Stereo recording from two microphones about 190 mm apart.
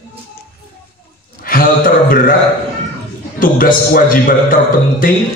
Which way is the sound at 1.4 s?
50° left (ahead or behind).